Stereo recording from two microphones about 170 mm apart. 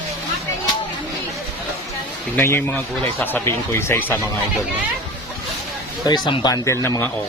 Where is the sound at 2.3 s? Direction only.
15° left (ahead or behind).